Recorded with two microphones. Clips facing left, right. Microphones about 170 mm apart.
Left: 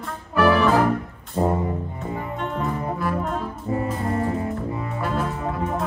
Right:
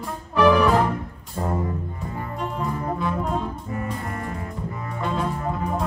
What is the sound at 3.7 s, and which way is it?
Brass instrument, 25° left (ahead or behind).